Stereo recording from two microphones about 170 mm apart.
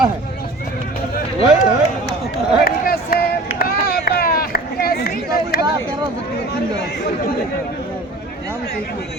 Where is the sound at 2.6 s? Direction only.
65° left (ahead or behind).